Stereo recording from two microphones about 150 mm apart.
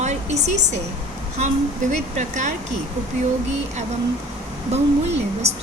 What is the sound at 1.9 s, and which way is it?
Speech, 50° right (ahead or behind).